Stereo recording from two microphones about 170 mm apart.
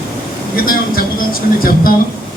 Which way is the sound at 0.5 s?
60° left (ahead or behind).